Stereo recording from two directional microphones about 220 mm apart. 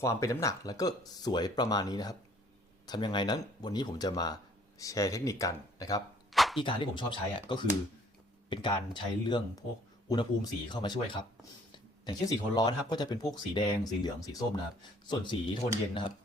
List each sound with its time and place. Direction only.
0.0 s speech: 15° left (ahead or behind)
6.3 s a sound: centre (ahead or behind)
6.6 s speech: 20° left (ahead or behind)